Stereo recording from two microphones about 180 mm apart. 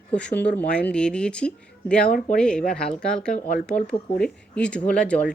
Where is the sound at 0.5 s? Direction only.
70° left (ahead or behind).